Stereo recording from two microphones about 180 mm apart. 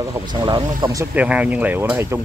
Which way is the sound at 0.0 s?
25° right (ahead or behind).